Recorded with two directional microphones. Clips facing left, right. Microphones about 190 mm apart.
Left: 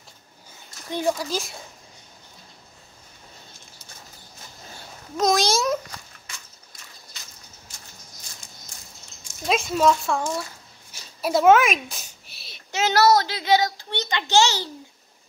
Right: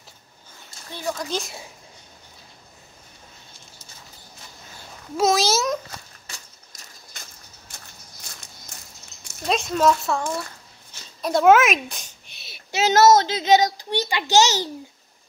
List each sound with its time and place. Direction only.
0.9 s speech: 5° left (ahead or behind)
5.1 s speech: 5° right (ahead or behind)
6.2 s a sound: 40° right (ahead or behind)
9.5 s speech: centre (ahead or behind)
10.9 s a sound: 5° left (ahead or behind)
12.7 s a child's voice: 20° right (ahead or behind)